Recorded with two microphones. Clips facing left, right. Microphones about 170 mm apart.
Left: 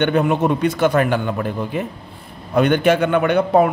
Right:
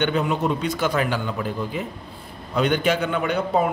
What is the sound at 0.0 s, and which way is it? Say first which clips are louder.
A man's voice: left 5 dB; 55° left (ahead or behind).